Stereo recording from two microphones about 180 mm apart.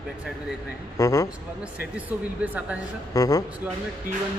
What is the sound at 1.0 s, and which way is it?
Speech, 15° left (ahead or behind).